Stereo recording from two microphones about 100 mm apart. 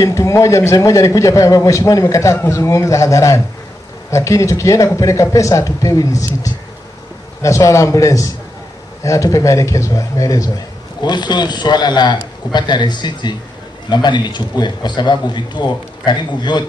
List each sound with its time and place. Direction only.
0.0 s a man's voice: 30° left (ahead or behind)
11.0 s a man's voice: 45° left (ahead or behind)